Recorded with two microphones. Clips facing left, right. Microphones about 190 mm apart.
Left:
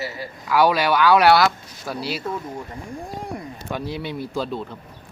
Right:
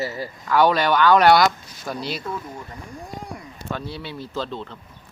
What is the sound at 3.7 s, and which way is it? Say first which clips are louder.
Speech: left 3 dB; 15° left (ahead or behind).